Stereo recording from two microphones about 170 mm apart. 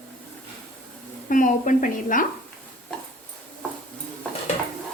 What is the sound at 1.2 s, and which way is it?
A woman's voice, 50° left (ahead or behind).